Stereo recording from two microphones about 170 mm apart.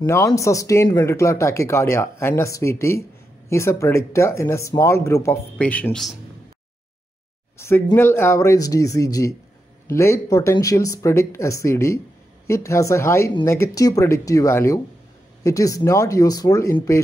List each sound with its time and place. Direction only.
0.0 s speech: 15° left (ahead or behind)
7.5 s speech: 15° left (ahead or behind)